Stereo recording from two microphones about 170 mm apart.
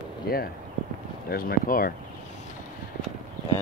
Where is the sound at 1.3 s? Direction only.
60° left (ahead or behind).